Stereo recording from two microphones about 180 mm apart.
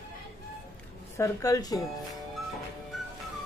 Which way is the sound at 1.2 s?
20° left (ahead or behind).